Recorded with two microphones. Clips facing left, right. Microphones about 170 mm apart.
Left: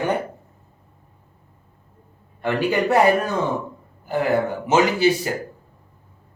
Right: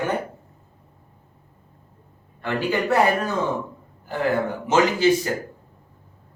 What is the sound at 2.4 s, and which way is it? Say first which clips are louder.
Speech: left 3 dB; 15° left (ahead or behind).